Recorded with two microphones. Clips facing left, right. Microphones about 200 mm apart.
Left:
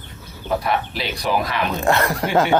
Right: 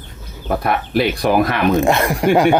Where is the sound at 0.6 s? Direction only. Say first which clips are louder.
Right 6 dB; 55° right (ahead or behind).